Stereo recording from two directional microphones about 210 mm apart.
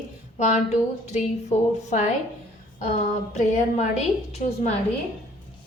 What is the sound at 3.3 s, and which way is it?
A woman's voice, 35° left (ahead or behind).